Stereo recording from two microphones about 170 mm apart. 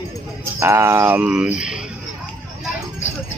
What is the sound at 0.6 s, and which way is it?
Speech, 15° right (ahead or behind).